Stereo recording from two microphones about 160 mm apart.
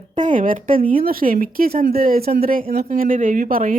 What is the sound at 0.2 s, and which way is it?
A woman's voice, 55° right (ahead or behind).